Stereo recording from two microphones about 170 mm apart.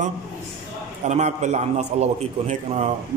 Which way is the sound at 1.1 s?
40° right (ahead or behind).